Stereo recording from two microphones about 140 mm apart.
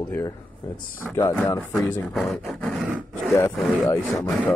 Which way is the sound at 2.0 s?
Centre (ahead or behind).